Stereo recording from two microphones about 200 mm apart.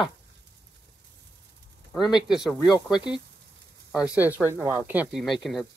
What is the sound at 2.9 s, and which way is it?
Speech, 20° left (ahead or behind).